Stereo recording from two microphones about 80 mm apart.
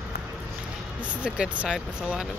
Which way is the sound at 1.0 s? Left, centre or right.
Centre.